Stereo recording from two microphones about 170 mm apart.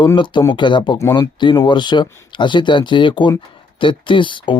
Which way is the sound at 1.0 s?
15° left (ahead or behind).